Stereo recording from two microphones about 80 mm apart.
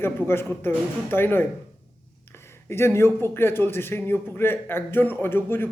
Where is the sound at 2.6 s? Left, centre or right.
Left.